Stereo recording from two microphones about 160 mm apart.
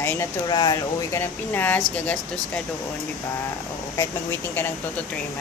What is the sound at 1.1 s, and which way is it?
A woman's voice, 15° left (ahead or behind).